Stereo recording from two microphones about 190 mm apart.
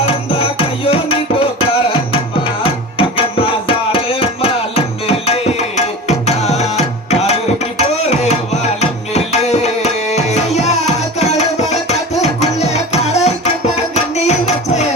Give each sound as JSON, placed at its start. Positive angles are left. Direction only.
{"t": 0.0, "sound": "music", "side_deg": 30}
{"t": 8.8, "sound": "tabla", "side_deg": 35}
{"t": 12.2, "sound": "music", "side_deg": 35}